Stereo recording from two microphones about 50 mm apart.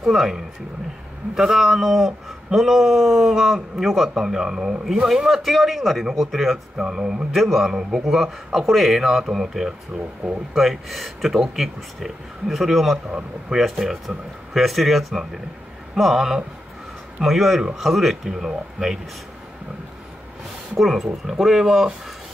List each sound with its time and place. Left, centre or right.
0.0 s speech: centre
7.3 s a man's voice: centre
9.9 s speech: right
10.5 s speech: centre
20.7 s speech: centre